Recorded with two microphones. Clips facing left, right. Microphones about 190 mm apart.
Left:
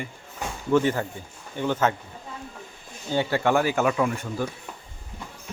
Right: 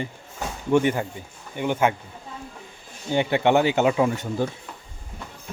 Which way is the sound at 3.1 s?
20° right (ahead or behind).